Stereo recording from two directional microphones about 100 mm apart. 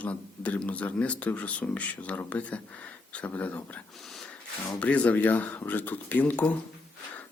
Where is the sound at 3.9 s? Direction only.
Centre (ahead or behind).